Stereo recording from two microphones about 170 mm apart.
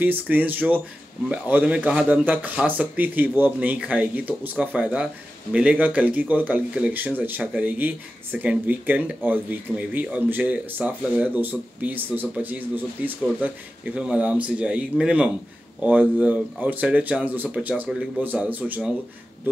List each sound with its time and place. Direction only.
0.0 s speech: 10° right (ahead or behind)